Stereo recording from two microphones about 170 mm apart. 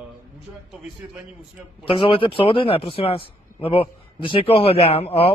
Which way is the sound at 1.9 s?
30° left (ahead or behind).